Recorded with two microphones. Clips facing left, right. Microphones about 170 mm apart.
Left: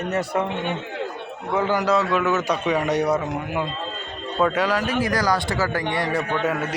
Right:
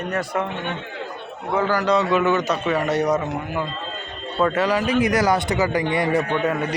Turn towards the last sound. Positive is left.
turn(degrees=5)  # may be behind; listen again after turning